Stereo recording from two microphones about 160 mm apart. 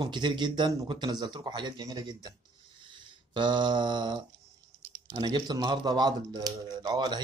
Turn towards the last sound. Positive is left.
turn(degrees=-25)  # may be behind; listen again after turning